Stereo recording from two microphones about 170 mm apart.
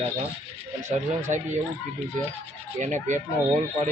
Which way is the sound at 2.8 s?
45° right (ahead or behind).